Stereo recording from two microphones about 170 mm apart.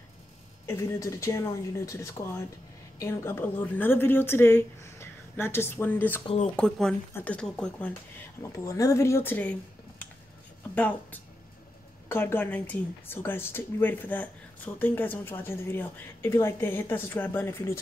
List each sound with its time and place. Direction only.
0.7 s speech: 15° left (ahead or behind)
6.2 s speech: 40° left (ahead or behind)
6.5 s speech: 5° left (ahead or behind)
8.4 s speech: 20° left (ahead or behind)
10.7 s speech: 10° left (ahead or behind)